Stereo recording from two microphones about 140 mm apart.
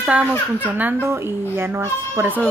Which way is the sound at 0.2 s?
15° left (ahead or behind).